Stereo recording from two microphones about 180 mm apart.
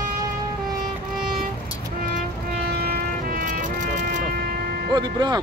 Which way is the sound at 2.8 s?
55° right (ahead or behind).